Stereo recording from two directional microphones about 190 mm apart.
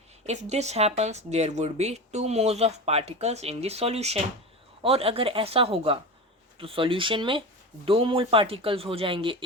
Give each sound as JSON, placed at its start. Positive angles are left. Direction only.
{"t": 0.3, "sound": "speech", "side_deg": -35}